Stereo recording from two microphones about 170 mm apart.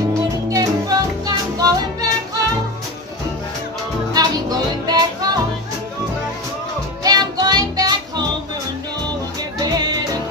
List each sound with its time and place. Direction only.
0.5 s music: 20° right (ahead or behind)
4.1 s music: 20° right (ahead or behind)
7.0 s music: 20° right (ahead or behind)
9.7 s music: 20° right (ahead or behind)